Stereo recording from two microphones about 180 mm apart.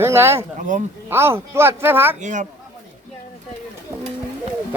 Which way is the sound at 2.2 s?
40° right (ahead or behind).